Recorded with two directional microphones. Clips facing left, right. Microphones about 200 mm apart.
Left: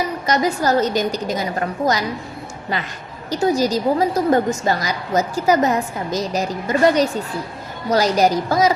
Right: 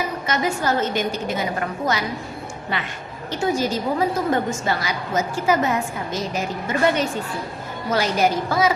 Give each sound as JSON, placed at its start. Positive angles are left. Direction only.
{"t": 0.3, "sound": "a woman's voice", "side_deg": 40}
{"t": 3.2, "sound": "a woman's voice", "side_deg": 40}